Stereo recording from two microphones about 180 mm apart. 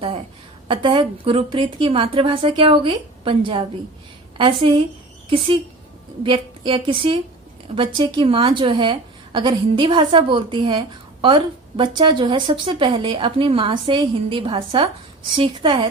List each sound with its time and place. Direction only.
0.7 s a woman's voice: 30° right (ahead or behind)
6.2 s a woman's voice: 30° right (ahead or behind)